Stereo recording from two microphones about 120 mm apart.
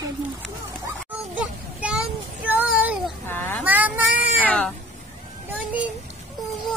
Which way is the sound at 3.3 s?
15° left (ahead or behind).